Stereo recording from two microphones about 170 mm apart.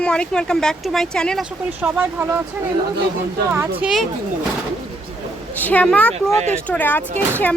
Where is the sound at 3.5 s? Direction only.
5° right (ahead or behind).